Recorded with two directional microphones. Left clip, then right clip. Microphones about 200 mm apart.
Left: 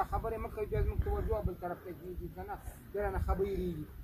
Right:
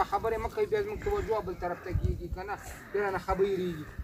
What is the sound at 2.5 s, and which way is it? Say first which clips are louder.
Speech: right 9 dB; 40° left (ahead or behind).